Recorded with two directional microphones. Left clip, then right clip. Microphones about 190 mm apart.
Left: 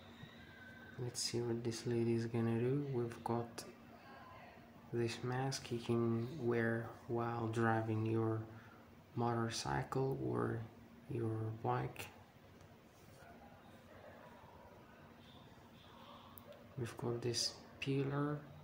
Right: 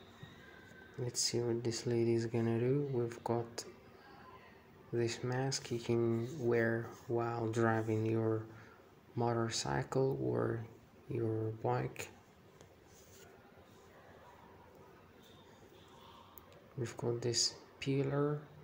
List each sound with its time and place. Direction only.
1.0 s speech: 25° right (ahead or behind)
4.9 s speech: 20° right (ahead or behind)
16.8 s speech: 20° right (ahead or behind)